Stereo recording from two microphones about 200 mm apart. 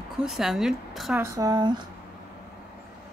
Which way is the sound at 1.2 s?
15° right (ahead or behind).